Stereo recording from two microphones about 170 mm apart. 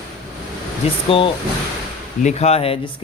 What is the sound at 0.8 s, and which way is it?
Speech, 35° left (ahead or behind).